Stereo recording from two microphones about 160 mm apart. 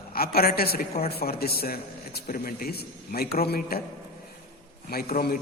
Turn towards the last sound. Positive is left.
turn(degrees=70)  # may be behind; listen again after turning